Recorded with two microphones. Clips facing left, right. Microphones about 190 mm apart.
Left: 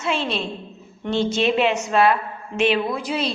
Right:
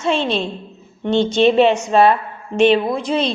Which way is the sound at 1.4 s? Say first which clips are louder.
Right 9 dB; 30° right (ahead or behind).